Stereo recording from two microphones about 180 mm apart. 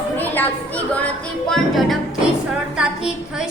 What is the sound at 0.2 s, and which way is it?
A woman's voice, 10° left (ahead or behind).